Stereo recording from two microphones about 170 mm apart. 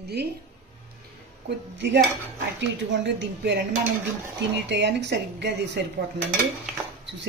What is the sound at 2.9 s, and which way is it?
Speech, 90° right.